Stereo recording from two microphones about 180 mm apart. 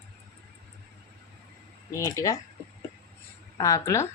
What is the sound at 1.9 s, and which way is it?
Speech, 15° left (ahead or behind).